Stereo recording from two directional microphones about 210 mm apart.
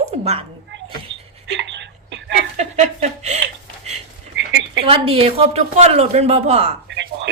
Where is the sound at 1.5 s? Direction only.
60° right (ahead or behind).